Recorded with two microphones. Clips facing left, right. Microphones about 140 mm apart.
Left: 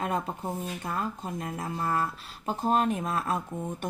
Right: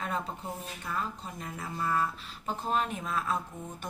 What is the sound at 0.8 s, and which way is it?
A woman's voice, 45° left (ahead or behind).